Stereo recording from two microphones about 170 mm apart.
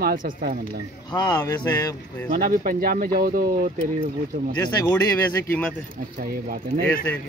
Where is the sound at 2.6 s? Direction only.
55° right (ahead or behind).